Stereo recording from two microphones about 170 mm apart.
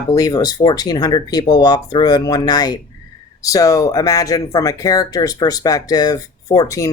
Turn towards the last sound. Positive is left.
turn(degrees=20)  # may be behind; listen again after turning